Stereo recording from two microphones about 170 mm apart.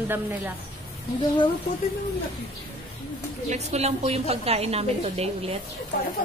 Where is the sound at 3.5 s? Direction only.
40° right (ahead or behind).